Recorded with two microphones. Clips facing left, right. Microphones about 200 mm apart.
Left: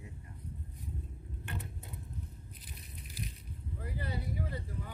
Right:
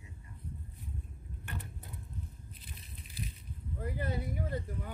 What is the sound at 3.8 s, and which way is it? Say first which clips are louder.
Speech: right 4 dB; 50° right (ahead or behind).